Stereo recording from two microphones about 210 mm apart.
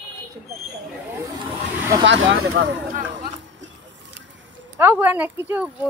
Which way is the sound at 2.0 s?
60° right (ahead or behind).